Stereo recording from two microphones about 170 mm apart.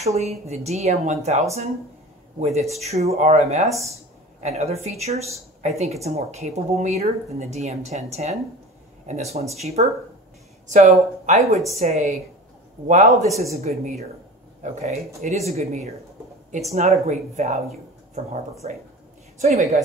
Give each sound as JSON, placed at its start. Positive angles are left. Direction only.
{"t": 0.0, "sound": "speech", "side_deg": -40}
{"t": 2.4, "sound": "a man's voice", "side_deg": -40}